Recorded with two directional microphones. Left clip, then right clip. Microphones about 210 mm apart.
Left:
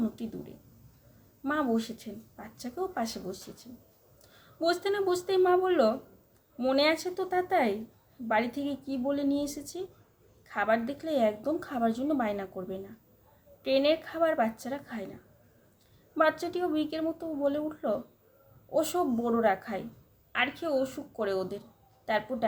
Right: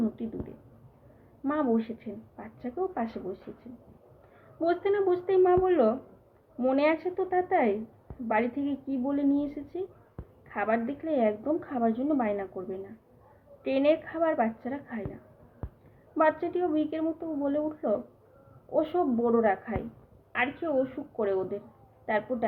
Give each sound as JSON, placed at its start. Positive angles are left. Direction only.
{"t": 1.5, "sound": "a woman's voice", "side_deg": 20}